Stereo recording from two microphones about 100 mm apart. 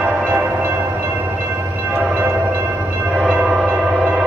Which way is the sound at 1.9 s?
15° right (ahead or behind).